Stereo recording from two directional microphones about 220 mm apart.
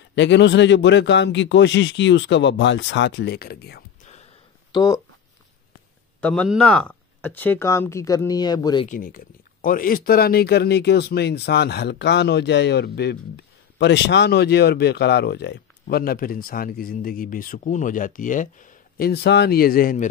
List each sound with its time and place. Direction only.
0.1 s speech: 55° left (ahead or behind)
4.0 s a sound: 30° left (ahead or behind)
4.7 s speech: 15° left (ahead or behind)
6.2 s speech: 5° left (ahead or behind)
8.8 s speech: 40° left (ahead or behind)